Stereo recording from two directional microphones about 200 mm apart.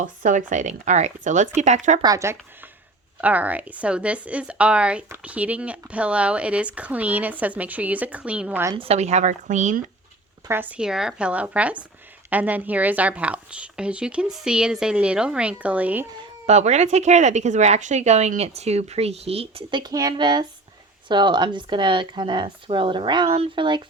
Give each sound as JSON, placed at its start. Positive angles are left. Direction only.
{"t": 0.0, "sound": "speech", "side_deg": -40}
{"t": 2.0, "sound": "a woman's voice", "side_deg": -15}
{"t": 8.7, "sound": "speech", "side_deg": -30}
{"t": 10.5, "sound": "a woman's voice", "side_deg": -10}
{"t": 16.5, "sound": "speech", "side_deg": -35}